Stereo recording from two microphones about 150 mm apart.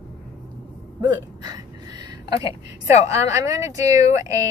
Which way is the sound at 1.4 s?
25° right (ahead or behind).